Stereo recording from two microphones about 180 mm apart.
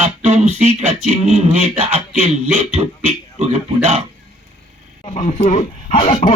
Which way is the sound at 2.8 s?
30° right (ahead or behind).